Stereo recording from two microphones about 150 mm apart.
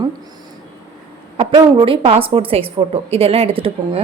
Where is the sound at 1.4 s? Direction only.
35° right (ahead or behind).